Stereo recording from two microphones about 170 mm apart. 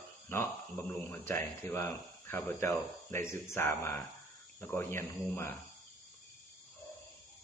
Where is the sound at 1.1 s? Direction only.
10° left (ahead or behind).